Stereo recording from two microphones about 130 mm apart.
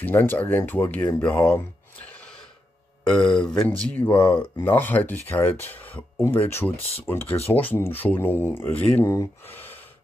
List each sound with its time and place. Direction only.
0.0 s speech: 15° left (ahead or behind)
2.0 s gasp: 10° left (ahead or behind)
3.1 s speech: 5° left (ahead or behind)